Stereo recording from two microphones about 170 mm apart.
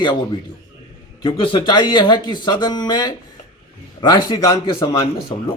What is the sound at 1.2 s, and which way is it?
Speech, 30° left (ahead or behind).